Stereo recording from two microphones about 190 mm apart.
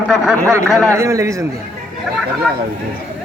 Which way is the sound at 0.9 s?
15° right (ahead or behind).